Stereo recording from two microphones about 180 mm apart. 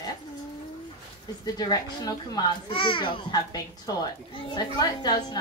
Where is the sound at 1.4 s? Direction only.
20° left (ahead or behind).